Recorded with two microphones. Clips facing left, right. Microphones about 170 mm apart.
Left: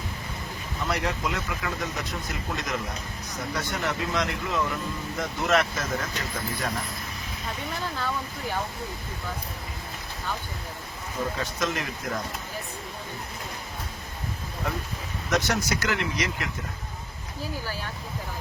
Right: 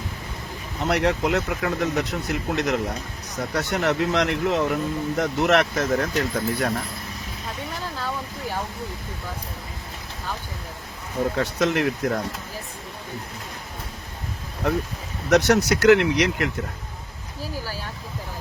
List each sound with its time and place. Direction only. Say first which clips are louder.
0.9 s speech: right 8 dB; 65° right (ahead or behind)
11.3 s speech: right 7 dB; 65° right (ahead or behind)
15.3 s speech: right 8 dB; 65° right (ahead or behind)